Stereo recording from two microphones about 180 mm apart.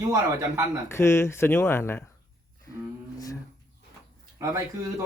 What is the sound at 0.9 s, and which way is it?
Speech, 15° left (ahead or behind).